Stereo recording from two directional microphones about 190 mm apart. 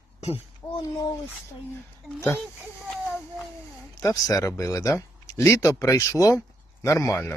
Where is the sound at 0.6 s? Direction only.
10° left (ahead or behind).